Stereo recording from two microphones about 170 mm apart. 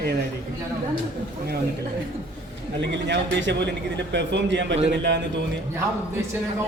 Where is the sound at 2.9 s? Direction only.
90° right.